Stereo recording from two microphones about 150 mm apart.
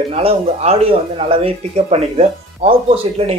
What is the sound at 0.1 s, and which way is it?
Speech, 40° right (ahead or behind).